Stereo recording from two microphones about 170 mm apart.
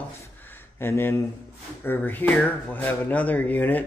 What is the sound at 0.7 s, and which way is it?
A man's voice, 15° left (ahead or behind).